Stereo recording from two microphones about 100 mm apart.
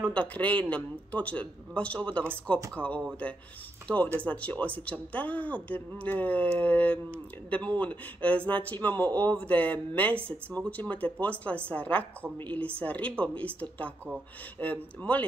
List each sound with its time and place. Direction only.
0.0 s a woman's voice: 10° left (ahead or behind)